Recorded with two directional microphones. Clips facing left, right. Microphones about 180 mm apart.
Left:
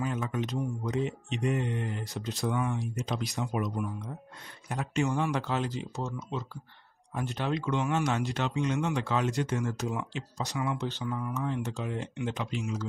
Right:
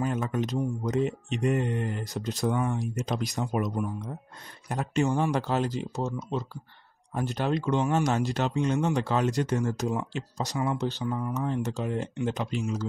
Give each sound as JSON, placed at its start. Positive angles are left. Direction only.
{"t": 0.0, "sound": "speech", "side_deg": -45}